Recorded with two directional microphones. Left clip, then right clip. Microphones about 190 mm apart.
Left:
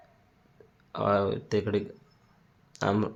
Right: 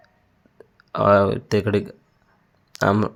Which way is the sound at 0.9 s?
40° right (ahead or behind).